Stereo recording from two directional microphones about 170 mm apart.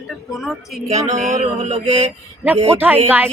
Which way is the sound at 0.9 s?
40° right (ahead or behind).